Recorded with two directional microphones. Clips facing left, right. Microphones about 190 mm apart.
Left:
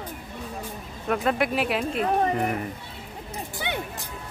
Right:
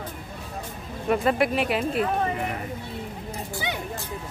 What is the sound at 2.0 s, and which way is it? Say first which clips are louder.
Speech: left 2 dB; 45° left (ahead or behind).